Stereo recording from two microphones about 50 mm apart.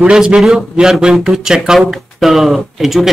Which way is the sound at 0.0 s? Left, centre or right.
Centre.